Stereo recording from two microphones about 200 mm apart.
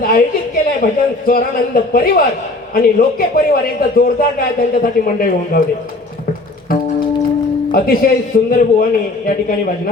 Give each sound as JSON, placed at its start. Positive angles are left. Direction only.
{"t": 0.0, "sound": "a woman's voice", "side_deg": 45}
{"t": 7.7, "sound": "a man's voice", "side_deg": 45}